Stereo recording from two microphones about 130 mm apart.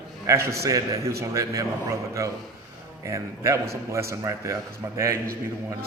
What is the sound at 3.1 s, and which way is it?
A man's voice, 25° right (ahead or behind).